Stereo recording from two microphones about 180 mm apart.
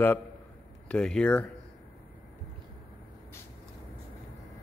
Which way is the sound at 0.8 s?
5° left (ahead or behind).